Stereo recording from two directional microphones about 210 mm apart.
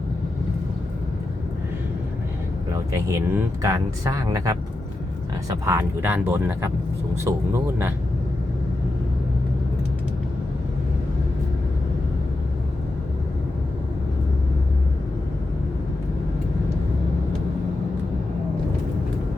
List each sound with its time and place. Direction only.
3.1 s speech: 15° right (ahead or behind)